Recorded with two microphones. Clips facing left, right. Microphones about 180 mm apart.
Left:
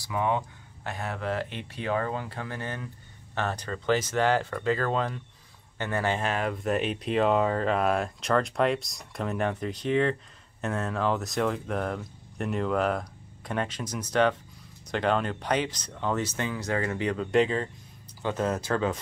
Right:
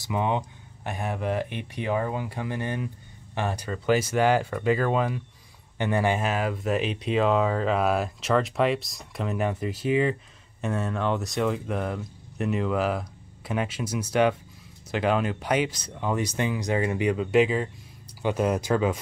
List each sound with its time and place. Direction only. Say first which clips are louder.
0.0 s speech: right 1 dB; 20° right (ahead or behind)